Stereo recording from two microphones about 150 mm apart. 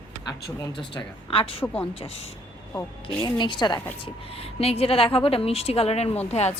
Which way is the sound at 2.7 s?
30° left (ahead or behind).